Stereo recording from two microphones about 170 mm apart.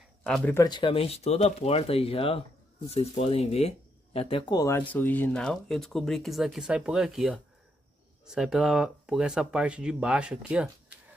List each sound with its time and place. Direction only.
0.2 s speech: 5° left (ahead or behind)
0.6 s speech: 25° left (ahead or behind); by 11.0 s 5° right (ahead or behind)